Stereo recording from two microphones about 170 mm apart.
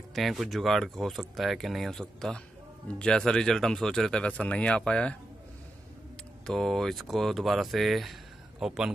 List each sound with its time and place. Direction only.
0.1 s speech: centre (ahead or behind)
6.4 s speech: 5° left (ahead or behind)